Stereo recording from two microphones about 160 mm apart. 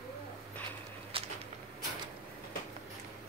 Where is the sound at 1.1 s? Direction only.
35° right (ahead or behind).